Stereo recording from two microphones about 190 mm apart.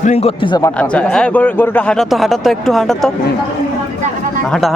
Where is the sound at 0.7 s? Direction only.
5° left (ahead or behind).